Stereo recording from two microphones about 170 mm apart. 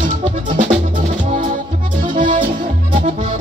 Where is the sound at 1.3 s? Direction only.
45° right (ahead or behind).